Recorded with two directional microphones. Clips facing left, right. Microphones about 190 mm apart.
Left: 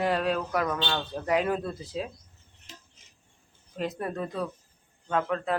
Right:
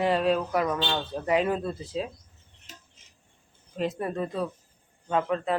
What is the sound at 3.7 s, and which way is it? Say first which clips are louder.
Speech: right 3 dB; 5° right (ahead or behind).